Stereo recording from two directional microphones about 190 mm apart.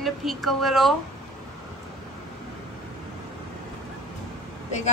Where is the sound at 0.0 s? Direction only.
Centre (ahead or behind).